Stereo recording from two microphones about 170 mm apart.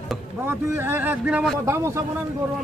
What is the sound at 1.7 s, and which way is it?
Speech, 15° right (ahead or behind).